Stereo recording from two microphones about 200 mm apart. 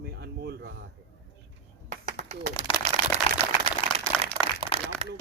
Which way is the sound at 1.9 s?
35° right (ahead or behind).